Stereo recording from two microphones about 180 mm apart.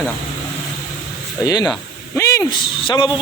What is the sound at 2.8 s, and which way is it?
Speech, 25° left (ahead or behind).